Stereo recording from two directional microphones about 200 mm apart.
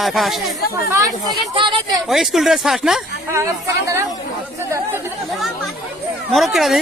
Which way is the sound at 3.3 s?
15° right (ahead or behind).